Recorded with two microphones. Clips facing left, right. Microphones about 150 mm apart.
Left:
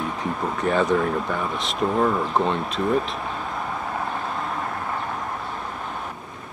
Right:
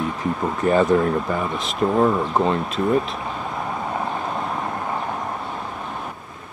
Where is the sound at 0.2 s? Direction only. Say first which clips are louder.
Right 2 dB; centre (ahead or behind).